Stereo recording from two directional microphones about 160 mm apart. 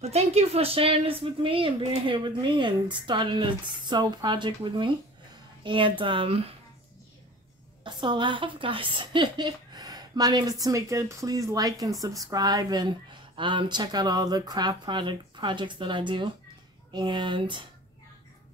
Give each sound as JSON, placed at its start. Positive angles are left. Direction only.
{"t": 0.0, "sound": "speech", "side_deg": -40}
{"t": 7.8, "sound": "a woman's voice", "side_deg": -30}